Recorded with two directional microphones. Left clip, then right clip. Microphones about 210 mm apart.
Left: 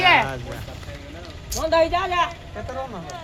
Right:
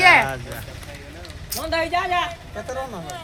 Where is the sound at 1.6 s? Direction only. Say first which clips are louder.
Left 3 dB; 50° left (ahead or behind).